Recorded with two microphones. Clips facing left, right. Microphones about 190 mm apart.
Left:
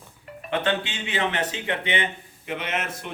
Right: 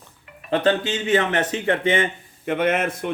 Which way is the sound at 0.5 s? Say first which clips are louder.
Right 6 dB; 40° right (ahead or behind).